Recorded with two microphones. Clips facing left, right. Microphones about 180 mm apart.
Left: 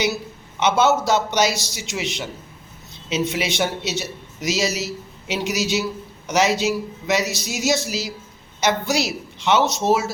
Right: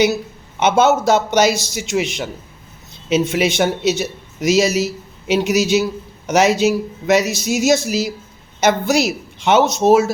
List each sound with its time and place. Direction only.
0.6 s speech: 50° right (ahead or behind)